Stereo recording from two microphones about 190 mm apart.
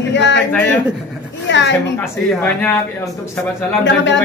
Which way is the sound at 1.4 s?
70° left (ahead or behind).